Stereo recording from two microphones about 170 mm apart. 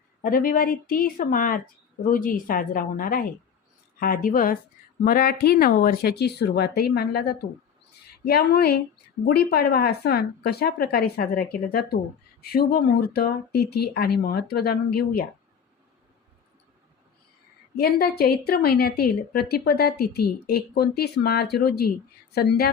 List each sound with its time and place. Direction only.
0.2 s a woman's voice: 55° left (ahead or behind)
17.7 s a woman's voice: 65° left (ahead or behind)